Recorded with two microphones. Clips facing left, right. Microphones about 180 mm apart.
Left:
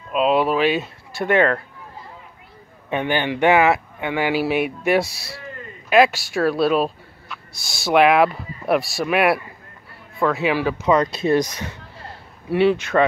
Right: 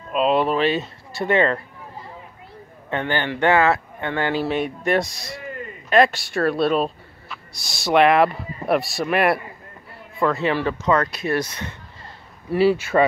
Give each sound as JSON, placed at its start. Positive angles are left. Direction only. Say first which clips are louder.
{"t": 0.1, "sound": "speech", "louder": "left 1 dB", "side_deg": 0}
{"t": 2.9, "sound": "speech", "louder": "left 2 dB", "side_deg": 15}
{"t": 11.1, "sound": "speech", "louder": "left 5 dB", "side_deg": 25}
{"t": 12.4, "sound": "speech", "louder": "even", "side_deg": 0}